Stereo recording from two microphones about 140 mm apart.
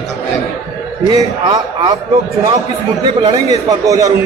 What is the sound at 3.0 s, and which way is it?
A man's voice, 30° right (ahead or behind).